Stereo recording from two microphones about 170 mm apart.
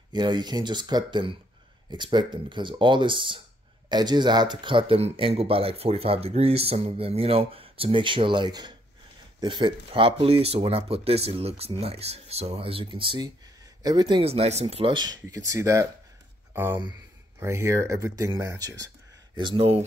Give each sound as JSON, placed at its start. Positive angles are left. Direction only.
{"t": 0.1, "sound": "speech", "side_deg": -25}